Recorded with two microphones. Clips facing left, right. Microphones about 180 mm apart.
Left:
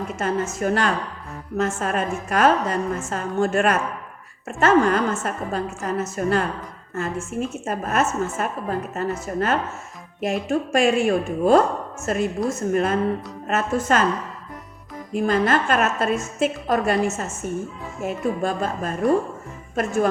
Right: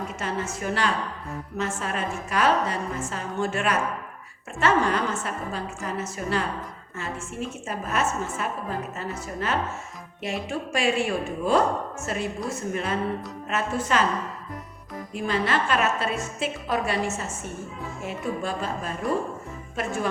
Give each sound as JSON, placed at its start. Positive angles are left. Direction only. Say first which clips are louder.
{"t": 0.2, "sound": "a woman's voice", "louder": "left 8 dB", "side_deg": 45}
{"t": 15.1, "sound": "a woman's voice", "louder": "left 6 dB", "side_deg": 45}